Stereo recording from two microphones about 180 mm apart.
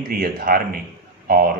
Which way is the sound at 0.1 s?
55° right (ahead or behind).